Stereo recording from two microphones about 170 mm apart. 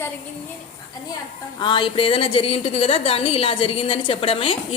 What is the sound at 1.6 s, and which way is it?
A woman's voice, 30° left (ahead or behind).